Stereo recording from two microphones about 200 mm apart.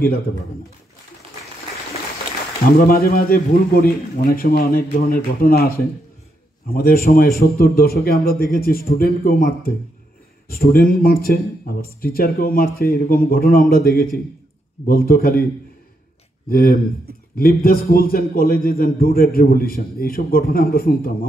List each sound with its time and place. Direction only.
2.8 s a man's voice: 50° left (ahead or behind)
16.4 s a man's voice: 45° left (ahead or behind)